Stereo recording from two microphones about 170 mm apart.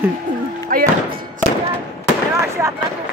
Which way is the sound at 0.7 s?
55° right (ahead or behind).